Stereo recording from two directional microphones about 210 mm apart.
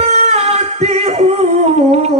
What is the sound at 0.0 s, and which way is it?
Music, 30° right (ahead or behind).